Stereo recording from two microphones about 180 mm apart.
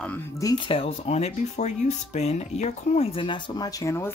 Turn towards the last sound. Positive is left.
turn(degrees=15)  # may be behind; listen again after turning